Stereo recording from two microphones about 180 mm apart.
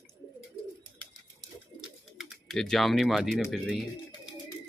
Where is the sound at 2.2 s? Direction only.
Centre (ahead or behind).